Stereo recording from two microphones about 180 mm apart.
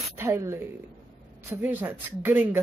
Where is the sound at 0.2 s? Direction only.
15° right (ahead or behind).